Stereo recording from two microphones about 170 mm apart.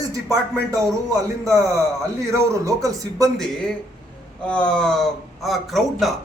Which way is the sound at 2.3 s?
20° right (ahead or behind).